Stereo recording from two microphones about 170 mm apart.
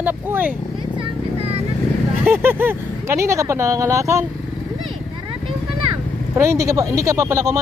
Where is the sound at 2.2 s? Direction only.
10° right (ahead or behind).